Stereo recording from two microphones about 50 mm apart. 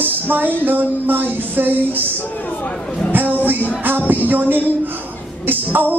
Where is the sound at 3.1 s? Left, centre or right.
Right.